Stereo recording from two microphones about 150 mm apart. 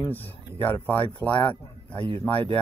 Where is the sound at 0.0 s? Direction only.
10° left (ahead or behind).